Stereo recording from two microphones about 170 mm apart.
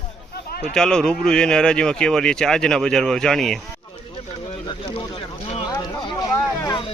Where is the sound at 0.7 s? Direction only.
5° left (ahead or behind).